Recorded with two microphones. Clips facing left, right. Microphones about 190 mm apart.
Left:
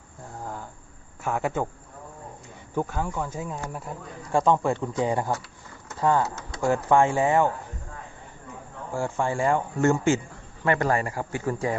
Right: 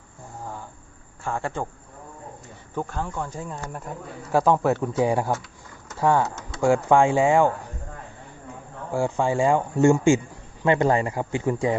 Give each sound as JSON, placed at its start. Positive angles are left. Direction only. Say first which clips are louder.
{"t": 1.2, "sound": "a man's voice", "louder": "left 2 dB", "side_deg": 5}
{"t": 2.7, "sound": "a man's voice", "louder": "left 1 dB", "side_deg": 10}
{"t": 8.9, "sound": "speech", "louder": "right 4 dB", "side_deg": -15}